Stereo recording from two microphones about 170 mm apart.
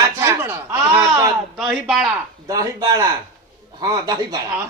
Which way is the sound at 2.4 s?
20° right (ahead or behind).